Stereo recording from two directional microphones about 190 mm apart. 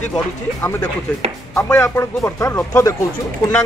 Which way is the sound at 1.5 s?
15° left (ahead or behind).